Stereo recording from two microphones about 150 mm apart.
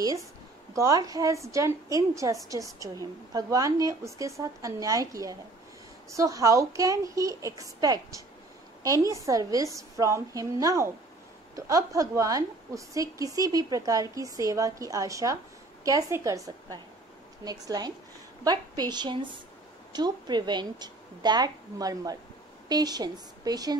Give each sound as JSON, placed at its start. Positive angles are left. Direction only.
{"t": 0.0, "sound": "a woman's voice", "side_deg": -20}